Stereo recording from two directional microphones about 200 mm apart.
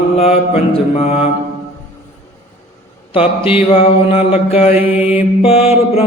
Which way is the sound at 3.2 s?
25° left (ahead or behind).